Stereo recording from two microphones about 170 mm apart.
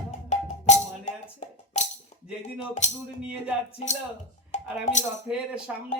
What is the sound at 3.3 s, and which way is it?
Music, 5° right (ahead or behind).